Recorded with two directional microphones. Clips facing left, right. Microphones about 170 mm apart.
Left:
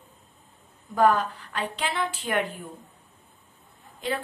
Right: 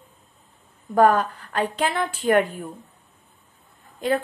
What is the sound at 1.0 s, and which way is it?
A woman's voice, 45° right (ahead or behind).